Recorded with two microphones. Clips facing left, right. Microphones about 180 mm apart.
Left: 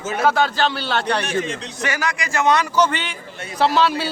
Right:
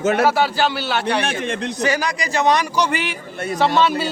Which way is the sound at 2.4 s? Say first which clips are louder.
Left 1 dB; 15° right (ahead or behind).